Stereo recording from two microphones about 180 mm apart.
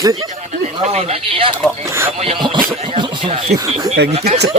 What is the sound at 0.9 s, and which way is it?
Speech, 35° right (ahead or behind).